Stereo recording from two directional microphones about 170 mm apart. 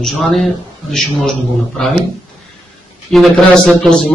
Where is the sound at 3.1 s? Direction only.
Centre (ahead or behind).